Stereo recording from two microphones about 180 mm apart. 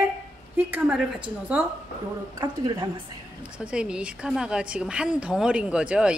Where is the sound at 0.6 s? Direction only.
10° right (ahead or behind).